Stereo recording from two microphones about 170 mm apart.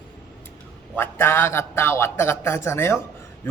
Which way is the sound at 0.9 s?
15° left (ahead or behind).